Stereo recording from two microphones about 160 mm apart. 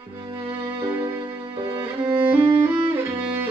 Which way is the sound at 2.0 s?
15° right (ahead or behind).